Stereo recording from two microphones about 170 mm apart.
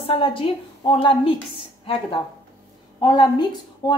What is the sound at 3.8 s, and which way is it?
Speech, 25° left (ahead or behind).